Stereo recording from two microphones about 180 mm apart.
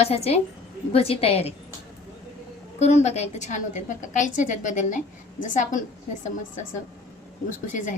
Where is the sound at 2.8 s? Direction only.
40° left (ahead or behind).